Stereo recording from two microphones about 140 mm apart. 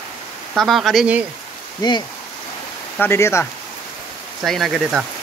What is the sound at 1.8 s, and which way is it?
Speech, 30° left (ahead or behind).